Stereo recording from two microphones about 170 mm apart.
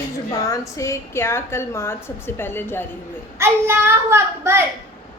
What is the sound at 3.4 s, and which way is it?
A child's voice, 15° right (ahead or behind).